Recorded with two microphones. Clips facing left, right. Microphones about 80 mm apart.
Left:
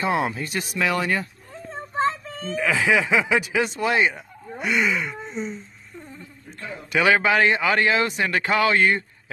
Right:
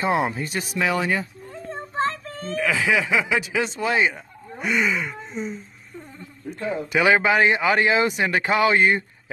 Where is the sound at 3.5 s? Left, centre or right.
Centre.